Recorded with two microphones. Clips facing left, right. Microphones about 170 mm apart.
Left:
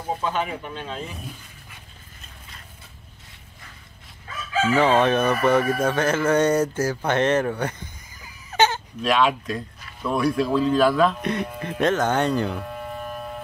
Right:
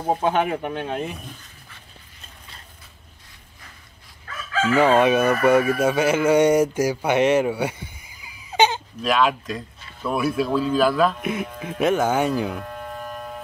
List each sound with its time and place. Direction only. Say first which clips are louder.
0.1 s speech: right 5 dB; 55° right (ahead or behind)
4.7 s speech: right 2 dB; 10° right (ahead or behind)
9.0 s speech: even; centre (ahead or behind)
11.8 s sheep: right 1 dB; 10° right (ahead or behind)